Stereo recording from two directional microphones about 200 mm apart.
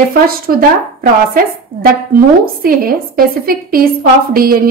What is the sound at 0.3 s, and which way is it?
A woman's voice, 45° right (ahead or behind).